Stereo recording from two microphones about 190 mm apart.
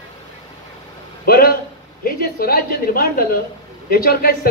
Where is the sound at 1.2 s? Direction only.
50° left (ahead or behind).